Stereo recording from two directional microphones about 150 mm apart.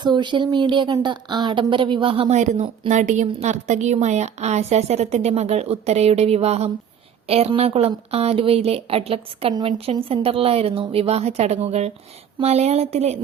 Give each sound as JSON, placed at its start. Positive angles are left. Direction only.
{"t": 0.0, "sound": "speech", "side_deg": -30}
{"t": 2.3, "sound": "a woman's voice", "side_deg": -50}